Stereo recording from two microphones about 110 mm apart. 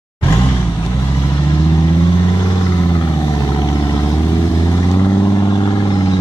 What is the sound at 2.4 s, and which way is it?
Vehicle, 30° left (ahead or behind).